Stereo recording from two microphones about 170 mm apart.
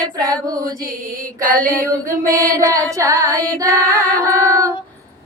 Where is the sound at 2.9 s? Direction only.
20° right (ahead or behind).